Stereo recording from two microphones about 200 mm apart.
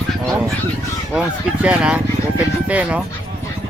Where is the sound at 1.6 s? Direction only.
5° right (ahead or behind).